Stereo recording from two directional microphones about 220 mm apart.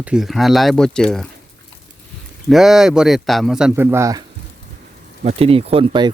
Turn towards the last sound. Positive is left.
turn(degrees=-25)  # may be behind; listen again after turning